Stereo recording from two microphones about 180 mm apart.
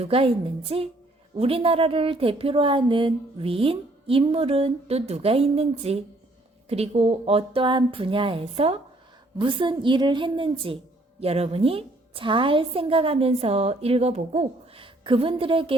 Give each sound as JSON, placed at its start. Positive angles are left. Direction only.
{"t": 0.0, "sound": "a woman's voice", "side_deg": -35}